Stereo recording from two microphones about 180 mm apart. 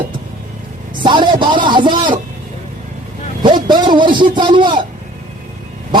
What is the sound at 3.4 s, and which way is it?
A man's voice, 25° right (ahead or behind).